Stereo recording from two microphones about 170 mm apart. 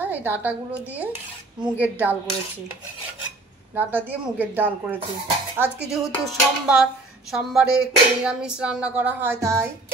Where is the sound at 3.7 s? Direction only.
10° right (ahead or behind).